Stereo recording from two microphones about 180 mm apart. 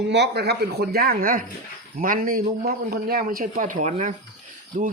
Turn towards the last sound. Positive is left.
turn(degrees=-50)  # may be behind; listen again after turning